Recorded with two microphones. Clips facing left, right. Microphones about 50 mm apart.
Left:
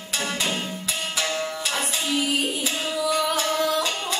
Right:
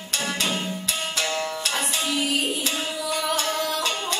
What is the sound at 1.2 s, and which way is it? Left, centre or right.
Music, centre.